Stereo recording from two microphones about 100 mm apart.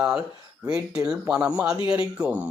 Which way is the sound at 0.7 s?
10° right (ahead or behind).